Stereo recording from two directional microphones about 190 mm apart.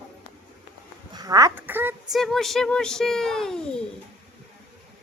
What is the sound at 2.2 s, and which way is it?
A child's voice, centre (ahead or behind).